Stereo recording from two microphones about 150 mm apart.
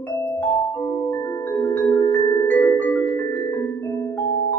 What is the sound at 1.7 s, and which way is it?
Music, 10° left (ahead or behind).